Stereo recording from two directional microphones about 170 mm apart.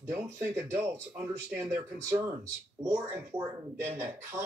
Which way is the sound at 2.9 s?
15° right (ahead or behind).